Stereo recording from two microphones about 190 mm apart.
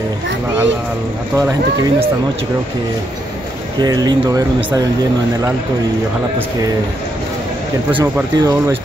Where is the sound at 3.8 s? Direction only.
20° right (ahead or behind).